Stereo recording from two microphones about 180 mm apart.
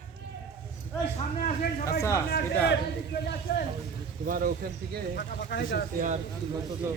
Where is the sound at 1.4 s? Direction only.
50° left (ahead or behind).